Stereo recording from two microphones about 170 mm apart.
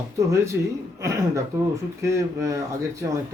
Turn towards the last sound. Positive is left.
turn(degrees=-20)  # may be behind; listen again after turning